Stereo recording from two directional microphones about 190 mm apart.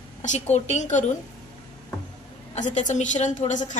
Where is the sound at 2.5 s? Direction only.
40° left (ahead or behind).